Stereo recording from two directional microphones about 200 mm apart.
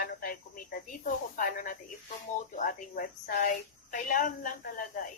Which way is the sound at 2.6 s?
45° left (ahead or behind).